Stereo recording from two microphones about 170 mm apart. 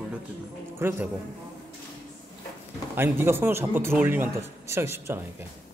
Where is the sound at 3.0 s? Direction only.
15° right (ahead or behind).